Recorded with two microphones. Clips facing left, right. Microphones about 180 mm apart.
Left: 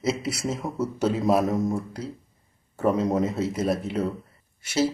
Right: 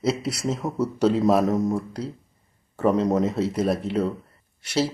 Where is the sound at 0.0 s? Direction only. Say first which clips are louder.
Right 2 dB; centre (ahead or behind).